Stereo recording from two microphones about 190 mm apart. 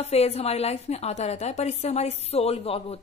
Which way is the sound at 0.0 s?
35° left (ahead or behind).